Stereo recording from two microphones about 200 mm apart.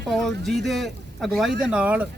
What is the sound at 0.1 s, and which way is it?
Speech, centre (ahead or behind).